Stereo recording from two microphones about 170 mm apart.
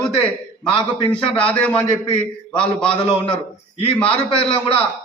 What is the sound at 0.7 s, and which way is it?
Speech, 30° left (ahead or behind).